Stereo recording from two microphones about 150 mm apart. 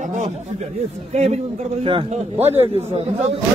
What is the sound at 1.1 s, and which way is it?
A man's voice, 45° right (ahead or behind).